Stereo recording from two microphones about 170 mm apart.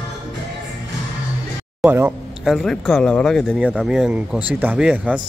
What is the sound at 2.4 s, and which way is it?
Speech, centre (ahead or behind).